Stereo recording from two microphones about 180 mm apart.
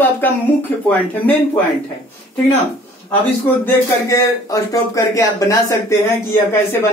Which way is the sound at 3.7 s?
15° left (ahead or behind).